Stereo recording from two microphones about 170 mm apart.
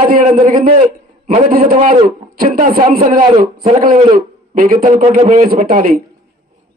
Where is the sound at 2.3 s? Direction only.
55° right (ahead or behind).